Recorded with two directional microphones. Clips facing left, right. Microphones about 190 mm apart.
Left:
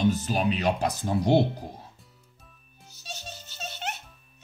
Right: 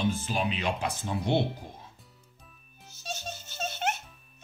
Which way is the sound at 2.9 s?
45° right (ahead or behind).